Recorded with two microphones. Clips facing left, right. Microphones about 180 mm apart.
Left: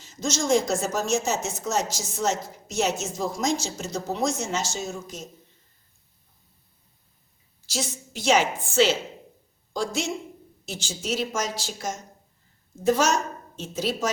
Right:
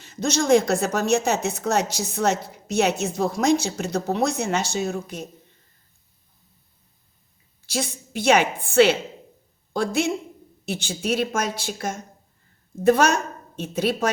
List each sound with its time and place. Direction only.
0.0 s a woman's voice: 60° right (ahead or behind)
7.7 s a woman's voice: 55° right (ahead or behind)